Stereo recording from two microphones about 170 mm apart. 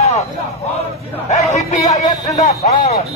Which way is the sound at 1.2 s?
40° left (ahead or behind).